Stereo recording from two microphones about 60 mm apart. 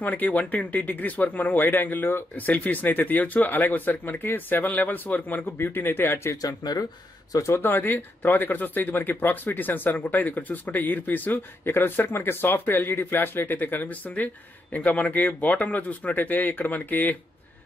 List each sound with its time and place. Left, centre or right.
0.0 s speech: left
2.3 s speech: left
6.4 s speech: left
7.3 s speech: left
7.6 s speech: left